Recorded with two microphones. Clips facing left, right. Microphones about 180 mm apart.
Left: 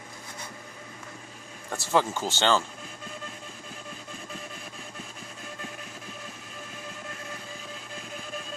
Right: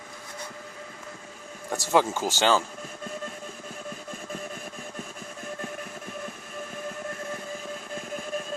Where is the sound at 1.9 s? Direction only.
15° right (ahead or behind).